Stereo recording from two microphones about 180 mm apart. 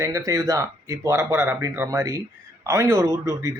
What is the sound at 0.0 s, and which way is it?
Speech, 15° right (ahead or behind).